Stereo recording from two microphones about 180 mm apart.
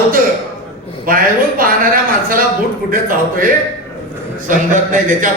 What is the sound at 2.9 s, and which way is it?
Speech, 50° right (ahead or behind).